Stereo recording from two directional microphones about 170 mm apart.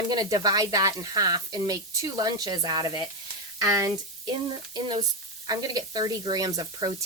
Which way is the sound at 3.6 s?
20° right (ahead or behind).